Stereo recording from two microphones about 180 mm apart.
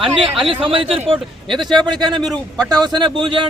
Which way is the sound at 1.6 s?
Centre (ahead or behind).